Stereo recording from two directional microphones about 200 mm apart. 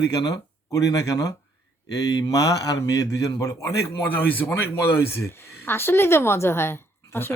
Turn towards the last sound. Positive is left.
turn(degrees=10)  # may be behind; listen again after turning